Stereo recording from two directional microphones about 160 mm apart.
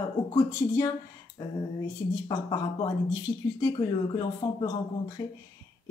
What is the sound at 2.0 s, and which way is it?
Speech, 25° left (ahead or behind).